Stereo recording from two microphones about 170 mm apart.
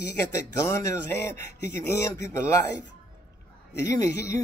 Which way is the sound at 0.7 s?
15° left (ahead or behind).